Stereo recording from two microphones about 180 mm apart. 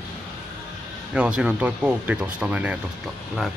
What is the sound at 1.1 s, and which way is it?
A man's voice, 5° right (ahead or behind).